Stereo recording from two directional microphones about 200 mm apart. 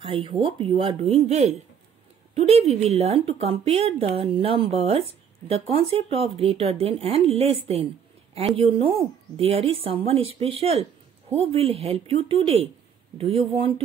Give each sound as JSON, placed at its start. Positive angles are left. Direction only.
{"t": 0.0, "sound": "a woman's voice", "side_deg": -25}